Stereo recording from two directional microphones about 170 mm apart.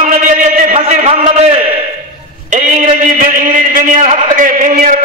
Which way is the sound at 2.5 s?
50° right (ahead or behind).